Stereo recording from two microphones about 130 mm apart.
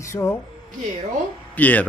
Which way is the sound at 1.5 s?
10° left (ahead or behind).